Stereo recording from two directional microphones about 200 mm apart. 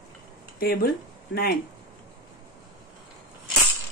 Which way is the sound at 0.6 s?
50° left (ahead or behind).